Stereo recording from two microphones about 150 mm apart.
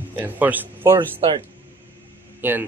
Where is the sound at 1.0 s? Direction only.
35° right (ahead or behind).